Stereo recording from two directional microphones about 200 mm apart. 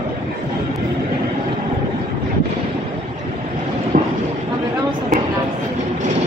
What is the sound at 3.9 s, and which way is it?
Vehicle, 45° right (ahead or behind).